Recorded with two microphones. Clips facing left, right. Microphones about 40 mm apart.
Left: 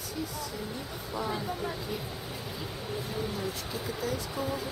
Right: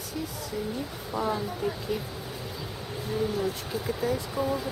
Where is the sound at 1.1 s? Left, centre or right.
Centre.